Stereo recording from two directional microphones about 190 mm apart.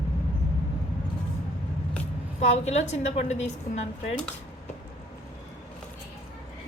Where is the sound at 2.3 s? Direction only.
35° left (ahead or behind).